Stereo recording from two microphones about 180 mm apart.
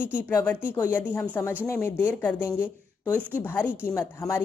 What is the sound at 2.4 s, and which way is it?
Speech, 5° right (ahead or behind).